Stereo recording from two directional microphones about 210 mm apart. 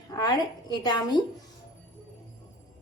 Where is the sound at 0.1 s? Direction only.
20° left (ahead or behind).